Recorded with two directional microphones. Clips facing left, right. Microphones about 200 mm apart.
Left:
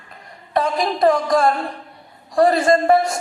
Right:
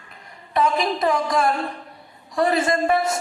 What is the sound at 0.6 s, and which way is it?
Speech, 45° left (ahead or behind).